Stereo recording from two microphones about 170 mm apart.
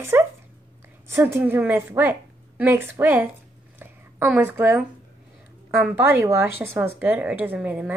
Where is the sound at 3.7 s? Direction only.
10° right (ahead or behind).